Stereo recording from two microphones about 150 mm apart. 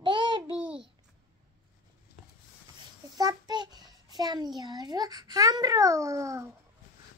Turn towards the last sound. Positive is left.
turn(degrees=-20)  # may be behind; listen again after turning